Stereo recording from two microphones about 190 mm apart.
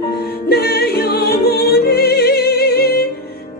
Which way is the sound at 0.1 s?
55° left (ahead or behind).